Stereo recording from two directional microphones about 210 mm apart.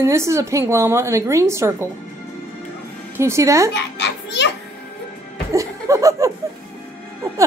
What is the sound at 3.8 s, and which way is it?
Children playing, 55° left (ahead or behind).